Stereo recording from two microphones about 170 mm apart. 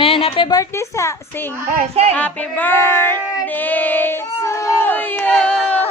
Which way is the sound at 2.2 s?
10° left (ahead or behind).